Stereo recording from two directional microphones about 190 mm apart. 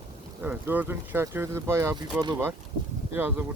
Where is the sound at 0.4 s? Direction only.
10° right (ahead or behind).